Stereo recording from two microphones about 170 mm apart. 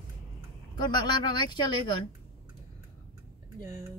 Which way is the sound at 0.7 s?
25° left (ahead or behind).